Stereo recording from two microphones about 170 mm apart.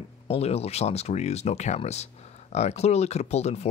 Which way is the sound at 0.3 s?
35° left (ahead or behind).